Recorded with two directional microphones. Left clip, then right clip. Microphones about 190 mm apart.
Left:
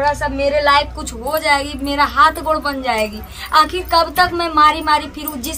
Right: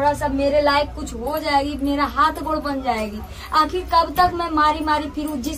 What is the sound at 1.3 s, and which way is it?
Speech, 20° left (ahead or behind).